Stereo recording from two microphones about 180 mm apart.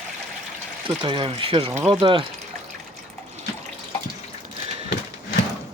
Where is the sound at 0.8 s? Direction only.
30° right (ahead or behind).